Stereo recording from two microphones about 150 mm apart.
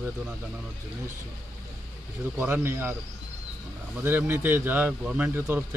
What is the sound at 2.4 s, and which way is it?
Speech, 15° right (ahead or behind).